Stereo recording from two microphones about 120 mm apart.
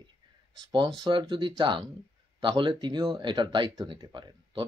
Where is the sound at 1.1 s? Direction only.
40° right (ahead or behind).